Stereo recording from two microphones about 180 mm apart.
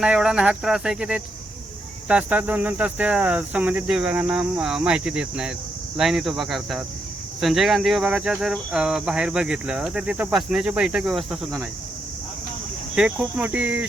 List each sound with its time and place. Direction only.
0.0 s speech: 5° right (ahead or behind)
2.0 s cricket: 10° right (ahead or behind)
6.0 s speech: centre (ahead or behind)
13.0 s cricket: 5° right (ahead or behind)